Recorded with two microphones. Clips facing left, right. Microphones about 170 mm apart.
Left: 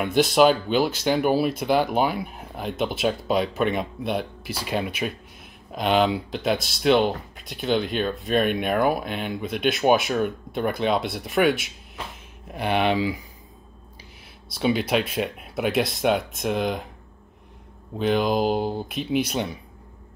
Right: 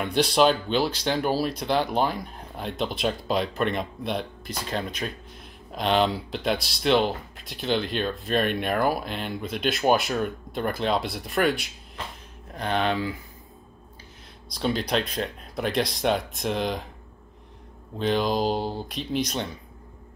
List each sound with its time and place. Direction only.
0.0 s speech: 5° left (ahead or behind)
12.5 s speech: 10° left (ahead or behind)
14.5 s speech: 5° left (ahead or behind)
17.9 s speech: 5° left (ahead or behind)